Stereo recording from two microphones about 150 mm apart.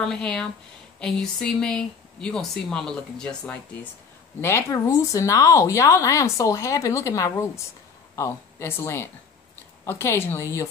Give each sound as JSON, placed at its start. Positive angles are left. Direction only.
{"t": 0.0, "sound": "speech", "side_deg": 5}
{"t": 4.4, "sound": "speech", "side_deg": 15}